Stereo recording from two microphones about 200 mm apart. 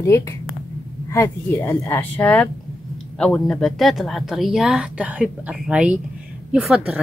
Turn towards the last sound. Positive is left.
turn(degrees=-5)  # may be behind; listen again after turning